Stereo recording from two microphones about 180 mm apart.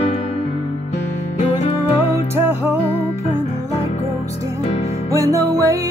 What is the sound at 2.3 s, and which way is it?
Music, 10° right (ahead or behind).